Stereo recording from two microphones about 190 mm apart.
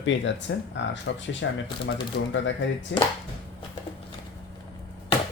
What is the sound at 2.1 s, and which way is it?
Speech, 65° left (ahead or behind).